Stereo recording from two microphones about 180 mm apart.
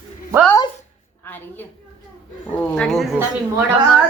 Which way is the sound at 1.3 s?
10° left (ahead or behind).